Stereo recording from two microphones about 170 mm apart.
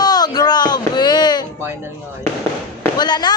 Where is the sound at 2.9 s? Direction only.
25° left (ahead or behind).